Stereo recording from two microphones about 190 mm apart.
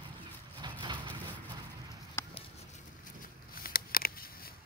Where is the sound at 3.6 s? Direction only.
50° left (ahead or behind).